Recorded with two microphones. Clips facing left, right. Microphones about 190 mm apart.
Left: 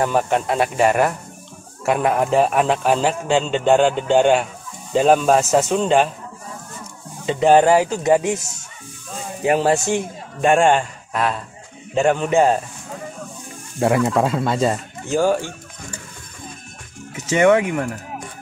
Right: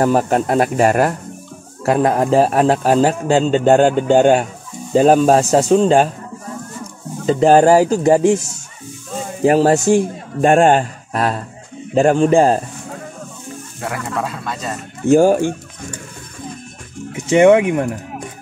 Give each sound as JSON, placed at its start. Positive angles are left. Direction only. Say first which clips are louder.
{"t": 0.0, "sound": "a man's voice", "louder": "right 4 dB", "side_deg": -35}
{"t": 7.2, "sound": "a man's voice", "louder": "right 3 dB", "side_deg": -40}
{"t": 9.4, "sound": "a man's voice", "louder": "right 5 dB", "side_deg": -35}
{"t": 13.7, "sound": "speech", "louder": "left 7 dB", "side_deg": 25}
{"t": 15.0, "sound": "speech", "louder": "right 7 dB", "side_deg": -45}
{"t": 17.1, "sound": "speech", "louder": "right 5 dB", "side_deg": -20}